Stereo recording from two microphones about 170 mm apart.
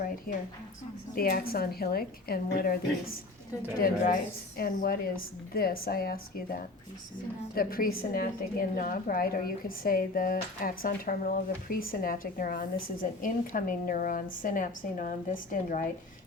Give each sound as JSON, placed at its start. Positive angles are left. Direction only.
{"t": 1.1, "sound": "a woman's voice", "side_deg": 60}